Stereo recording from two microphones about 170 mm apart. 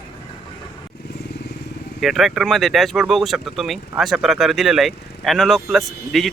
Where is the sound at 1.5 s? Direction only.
80° left.